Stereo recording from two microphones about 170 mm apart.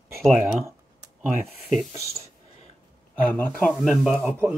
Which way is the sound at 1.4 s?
Centre (ahead or behind).